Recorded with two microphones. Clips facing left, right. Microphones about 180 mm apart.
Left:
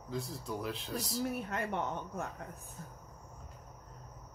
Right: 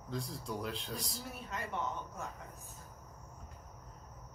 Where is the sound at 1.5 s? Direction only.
55° left (ahead or behind).